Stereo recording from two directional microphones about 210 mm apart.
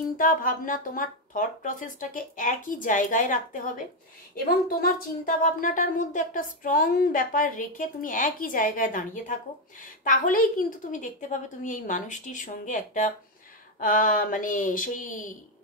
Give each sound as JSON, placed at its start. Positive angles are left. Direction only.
{"t": 0.2, "sound": "speech", "side_deg": 40}